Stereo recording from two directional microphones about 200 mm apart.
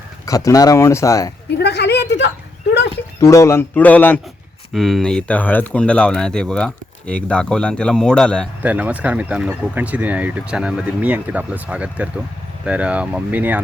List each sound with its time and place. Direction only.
0.3 s speech: 15° left (ahead or behind)
1.5 s a sound: 55° left (ahead or behind)
3.2 s speech: 15° left (ahead or behind)
8.6 s speech: 5° right (ahead or behind)